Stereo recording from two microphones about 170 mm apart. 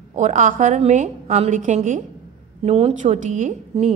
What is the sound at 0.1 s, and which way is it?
A woman's voice, 45° right (ahead or behind).